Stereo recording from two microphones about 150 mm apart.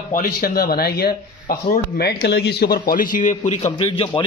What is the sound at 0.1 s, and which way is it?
Speech, 75° left (ahead or behind).